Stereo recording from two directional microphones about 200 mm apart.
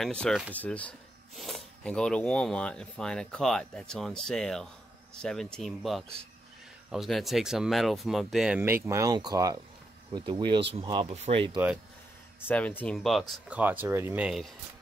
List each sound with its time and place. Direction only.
0.0 s speech: 5° left (ahead or behind); by 11.6 s 25° right (ahead or behind)
12.4 s speech: 10° left (ahead or behind)